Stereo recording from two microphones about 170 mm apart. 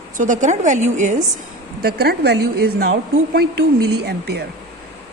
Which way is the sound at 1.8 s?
70° right (ahead or behind).